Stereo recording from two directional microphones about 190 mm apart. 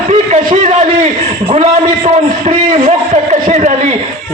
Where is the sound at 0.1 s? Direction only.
35° right (ahead or behind).